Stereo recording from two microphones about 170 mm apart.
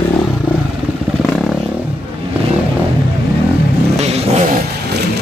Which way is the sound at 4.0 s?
40° right (ahead or behind).